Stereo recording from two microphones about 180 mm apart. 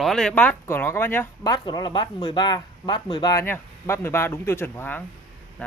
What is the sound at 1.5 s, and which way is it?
Speech, 25° left (ahead or behind).